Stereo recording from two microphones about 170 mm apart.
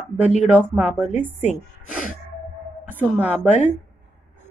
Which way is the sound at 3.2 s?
40° left (ahead or behind).